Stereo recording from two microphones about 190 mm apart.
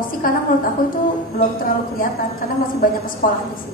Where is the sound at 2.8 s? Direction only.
45° left (ahead or behind).